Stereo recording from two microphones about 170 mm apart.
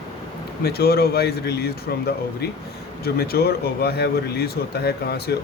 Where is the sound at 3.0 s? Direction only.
65° left (ahead or behind).